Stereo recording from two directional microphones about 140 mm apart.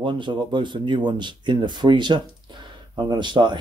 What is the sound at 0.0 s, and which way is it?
Speech, 35° right (ahead or behind).